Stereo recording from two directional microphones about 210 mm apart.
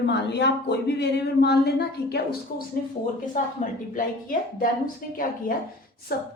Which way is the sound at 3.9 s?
40° left (ahead or behind).